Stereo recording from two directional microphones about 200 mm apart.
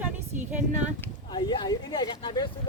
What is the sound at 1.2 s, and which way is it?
Speech, 20° left (ahead or behind).